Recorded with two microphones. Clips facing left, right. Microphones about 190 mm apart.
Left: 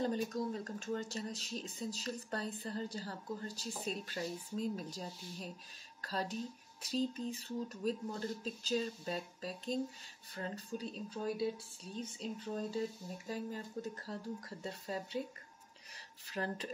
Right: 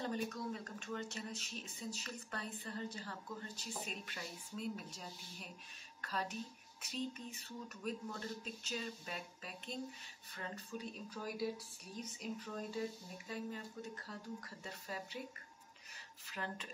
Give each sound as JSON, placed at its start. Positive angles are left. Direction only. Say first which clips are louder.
{"t": 0.0, "sound": "speech", "louder": "left 5 dB", "side_deg": 35}
{"t": 14.0, "sound": "speech", "louder": "left 5 dB", "side_deg": 35}
{"t": 16.3, "sound": "speech", "louder": "left 6 dB", "side_deg": 35}